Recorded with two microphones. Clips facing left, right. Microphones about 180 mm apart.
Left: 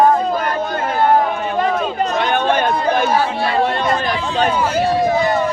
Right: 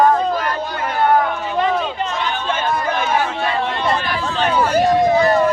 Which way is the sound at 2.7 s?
35° left (ahead or behind).